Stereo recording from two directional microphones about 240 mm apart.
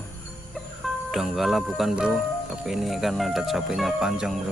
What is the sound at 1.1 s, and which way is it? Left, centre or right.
Speech, centre.